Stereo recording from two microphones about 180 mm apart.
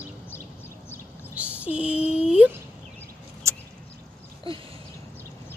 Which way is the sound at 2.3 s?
5° right (ahead or behind).